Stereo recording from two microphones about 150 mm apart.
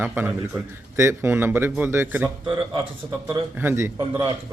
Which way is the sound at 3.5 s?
15° right (ahead or behind).